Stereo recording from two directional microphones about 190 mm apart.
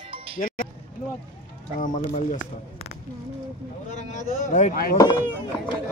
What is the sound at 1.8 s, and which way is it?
Speech, 40° left (ahead or behind).